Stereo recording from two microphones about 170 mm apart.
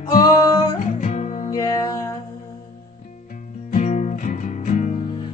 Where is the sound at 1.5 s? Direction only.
20° left (ahead or behind).